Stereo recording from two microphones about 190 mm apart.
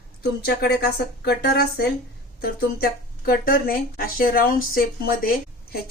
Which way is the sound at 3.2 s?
50° left (ahead or behind).